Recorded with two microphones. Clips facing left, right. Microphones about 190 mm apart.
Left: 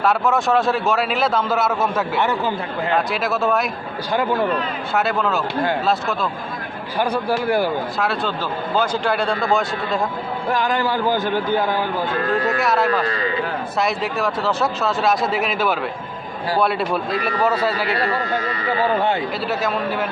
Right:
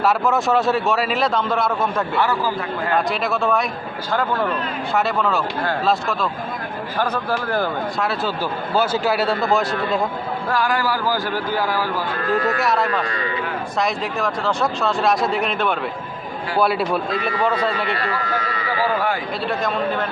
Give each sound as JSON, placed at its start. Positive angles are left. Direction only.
{"t": 0.0, "sound": "a man's voice", "side_deg": 0}
{"t": 2.1, "sound": "speech", "side_deg": 20}
{"t": 3.1, "sound": "a man's voice", "side_deg": 0}
{"t": 4.9, "sound": "a man's voice", "side_deg": 0}
{"t": 7.0, "sound": "speech", "side_deg": 10}
{"t": 7.9, "sound": "a man's voice", "side_deg": 0}
{"t": 10.5, "sound": "speech", "side_deg": 20}
{"t": 12.3, "sound": "a man's voice", "side_deg": 0}
{"t": 17.9, "sound": "speech", "side_deg": 30}
{"t": 19.5, "sound": "a man's voice", "side_deg": 5}